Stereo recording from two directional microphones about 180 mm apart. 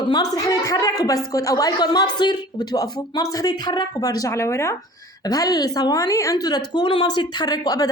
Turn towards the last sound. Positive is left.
turn(degrees=20)  # may be behind; listen again after turning